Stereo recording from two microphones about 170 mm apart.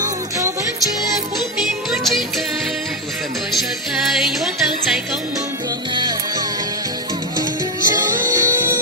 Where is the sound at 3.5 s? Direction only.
Centre (ahead or behind).